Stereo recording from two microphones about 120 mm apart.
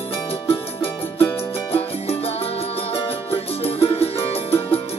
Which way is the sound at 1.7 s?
55° left (ahead or behind).